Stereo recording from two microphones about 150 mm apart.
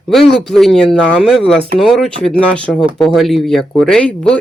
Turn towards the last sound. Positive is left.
turn(degrees=5)  # may be behind; listen again after turning